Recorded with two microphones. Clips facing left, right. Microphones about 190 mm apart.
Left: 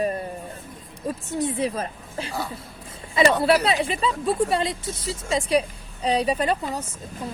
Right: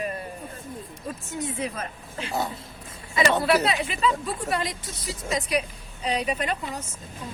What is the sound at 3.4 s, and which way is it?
Speech, 30° left (ahead or behind).